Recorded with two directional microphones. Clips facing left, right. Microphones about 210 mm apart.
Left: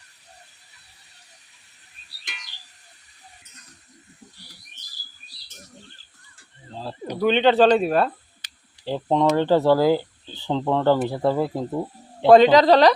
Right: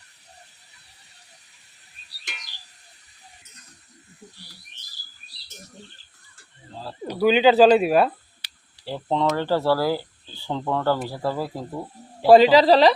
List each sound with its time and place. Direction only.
6.7 s a sound: 25° left (ahead or behind)
7.2 s speech: 5° right (ahead or behind)
8.8 s speech: 15° left (ahead or behind)
12.2 s speech: 5° right (ahead or behind)